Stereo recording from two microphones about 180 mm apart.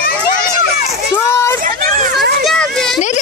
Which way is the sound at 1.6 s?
55° right (ahead or behind).